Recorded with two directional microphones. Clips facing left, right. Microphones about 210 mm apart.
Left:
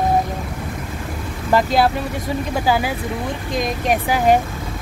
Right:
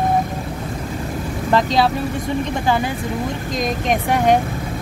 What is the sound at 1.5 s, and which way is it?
Speech, 5° left (ahead or behind).